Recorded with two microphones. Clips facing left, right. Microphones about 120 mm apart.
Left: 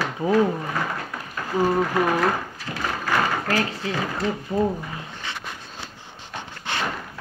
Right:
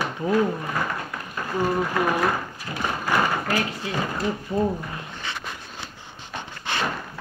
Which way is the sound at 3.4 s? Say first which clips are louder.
Left 2 dB; 35° left (ahead or behind).